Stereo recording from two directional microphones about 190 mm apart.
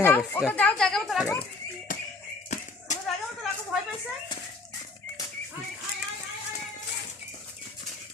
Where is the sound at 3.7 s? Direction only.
Centre (ahead or behind).